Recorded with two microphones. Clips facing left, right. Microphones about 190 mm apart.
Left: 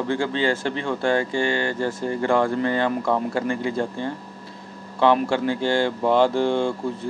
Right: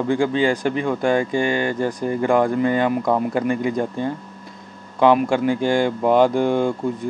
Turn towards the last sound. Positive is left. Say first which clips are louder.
# right 3 dB
turn(degrees=-15)  # may be behind; listen again after turning